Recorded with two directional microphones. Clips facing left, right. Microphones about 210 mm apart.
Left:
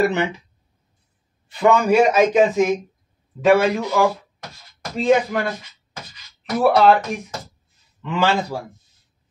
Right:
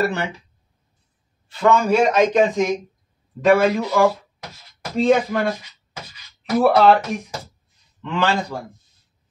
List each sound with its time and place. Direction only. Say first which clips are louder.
0.0 s speech: left 3 dB; 20° left (ahead or behind)
1.5 s speech: left 1 dB; 15° left (ahead or behind)
6.6 s speech: even; centre (ahead or behind)
8.0 s speech: left 1 dB; 5° left (ahead or behind)